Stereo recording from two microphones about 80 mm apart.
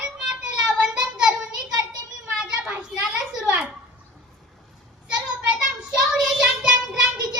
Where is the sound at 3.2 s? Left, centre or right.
Centre.